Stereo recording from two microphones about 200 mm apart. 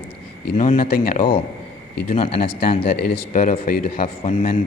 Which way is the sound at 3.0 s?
45° left (ahead or behind).